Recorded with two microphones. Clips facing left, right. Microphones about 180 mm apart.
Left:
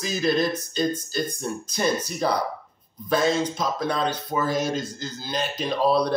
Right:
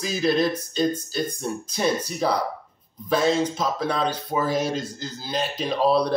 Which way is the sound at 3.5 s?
5° right (ahead or behind).